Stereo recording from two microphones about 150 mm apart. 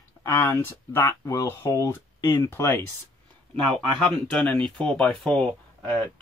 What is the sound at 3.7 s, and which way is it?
Speech, 5° left (ahead or behind).